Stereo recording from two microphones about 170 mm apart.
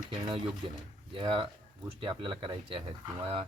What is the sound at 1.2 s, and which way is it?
Speech, 30° right (ahead or behind).